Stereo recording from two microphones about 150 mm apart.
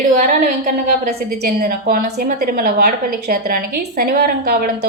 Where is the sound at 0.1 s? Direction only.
65° right (ahead or behind).